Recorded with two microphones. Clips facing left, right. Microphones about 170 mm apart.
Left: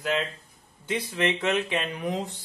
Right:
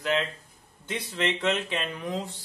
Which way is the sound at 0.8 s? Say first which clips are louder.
Left 3 dB; 10° left (ahead or behind).